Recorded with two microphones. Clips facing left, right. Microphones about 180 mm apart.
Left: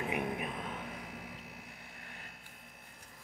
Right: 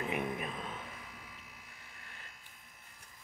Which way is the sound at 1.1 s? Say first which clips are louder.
Left 7 dB; 60° left (ahead or behind).